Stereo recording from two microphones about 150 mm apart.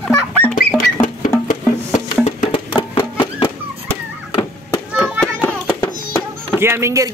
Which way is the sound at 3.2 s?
30° left (ahead or behind).